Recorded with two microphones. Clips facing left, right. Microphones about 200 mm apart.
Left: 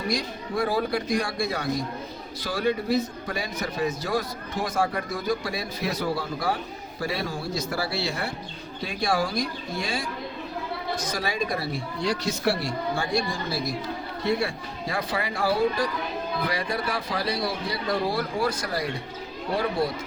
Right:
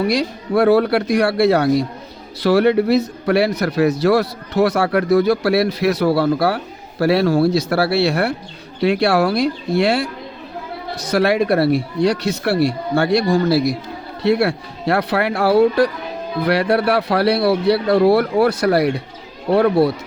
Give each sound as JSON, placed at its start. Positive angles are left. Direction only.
{"t": 0.0, "sound": "speech", "side_deg": -70}